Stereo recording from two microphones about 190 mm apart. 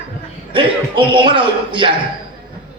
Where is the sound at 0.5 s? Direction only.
25° right (ahead or behind).